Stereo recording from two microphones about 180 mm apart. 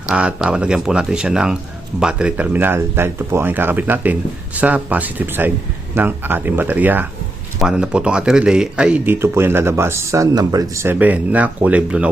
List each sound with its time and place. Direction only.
0.1 s speech: 5° right (ahead or behind)